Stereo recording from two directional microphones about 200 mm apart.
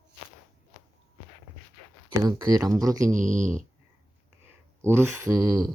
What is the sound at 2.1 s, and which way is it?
Speech, 15° right (ahead or behind).